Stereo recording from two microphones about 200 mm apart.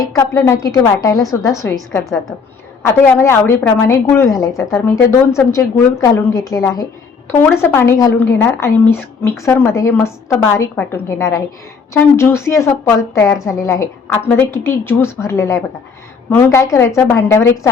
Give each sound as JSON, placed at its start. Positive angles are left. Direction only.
{"t": 0.2, "sound": "a woman's voice", "side_deg": 15}
{"t": 2.8, "sound": "a woman's voice", "side_deg": 10}